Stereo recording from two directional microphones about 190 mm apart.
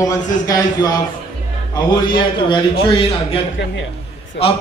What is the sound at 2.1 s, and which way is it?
A man's voice, 25° left (ahead or behind).